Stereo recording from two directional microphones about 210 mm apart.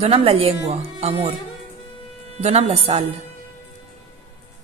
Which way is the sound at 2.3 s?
30° right (ahead or behind).